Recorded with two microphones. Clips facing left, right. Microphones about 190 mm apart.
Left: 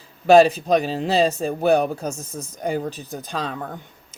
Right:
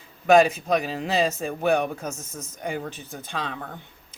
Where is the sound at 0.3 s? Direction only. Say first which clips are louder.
Left 4 dB; 35° left (ahead or behind).